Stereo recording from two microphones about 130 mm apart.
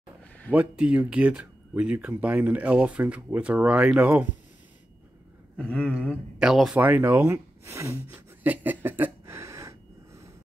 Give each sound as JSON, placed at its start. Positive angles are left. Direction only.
{"t": 0.5, "sound": "speech", "side_deg": -10}
{"t": 5.6, "sound": "a sound", "side_deg": 10}
{"t": 6.4, "sound": "speech", "side_deg": -5}
{"t": 6.8, "sound": "gasp", "side_deg": -15}